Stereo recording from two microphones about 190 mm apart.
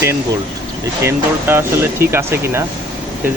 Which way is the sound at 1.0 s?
10° right (ahead or behind).